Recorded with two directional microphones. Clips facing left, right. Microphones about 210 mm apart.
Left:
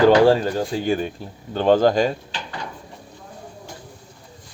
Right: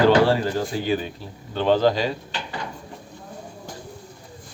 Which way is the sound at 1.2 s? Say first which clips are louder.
Left 3 dB; 50° left (ahead or behind).